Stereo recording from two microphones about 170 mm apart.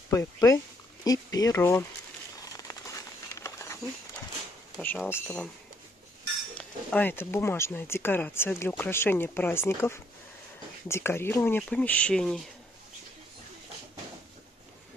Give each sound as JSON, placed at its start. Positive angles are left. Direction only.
{"t": 0.1, "sound": "speech", "side_deg": 20}
{"t": 2.5, "sound": "a sound", "side_deg": 20}
{"t": 4.8, "sound": "speech", "side_deg": 10}
{"t": 6.5, "sound": "speech", "side_deg": 5}